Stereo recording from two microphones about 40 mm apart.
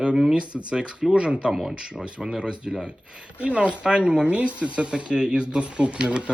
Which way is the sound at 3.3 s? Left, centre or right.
Right.